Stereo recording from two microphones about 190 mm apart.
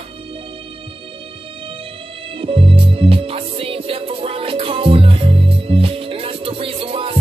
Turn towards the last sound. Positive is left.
turn(degrees=-30)  # may be behind; listen again after turning